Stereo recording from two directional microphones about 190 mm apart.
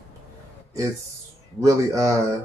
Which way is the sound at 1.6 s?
15° right (ahead or behind).